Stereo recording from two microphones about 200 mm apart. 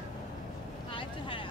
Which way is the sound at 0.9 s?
25° left (ahead or behind).